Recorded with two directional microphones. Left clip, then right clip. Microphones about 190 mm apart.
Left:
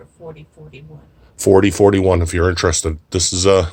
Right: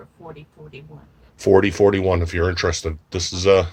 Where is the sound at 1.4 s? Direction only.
20° left (ahead or behind).